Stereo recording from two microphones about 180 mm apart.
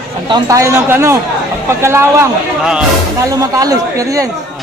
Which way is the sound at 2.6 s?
5° right (ahead or behind).